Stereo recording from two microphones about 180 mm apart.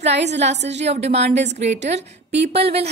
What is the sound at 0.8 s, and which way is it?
A woman's voice, 35° right (ahead or behind).